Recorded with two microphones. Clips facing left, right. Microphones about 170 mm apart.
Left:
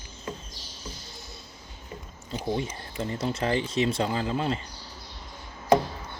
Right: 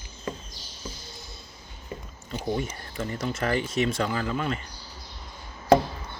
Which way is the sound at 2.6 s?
25° left (ahead or behind).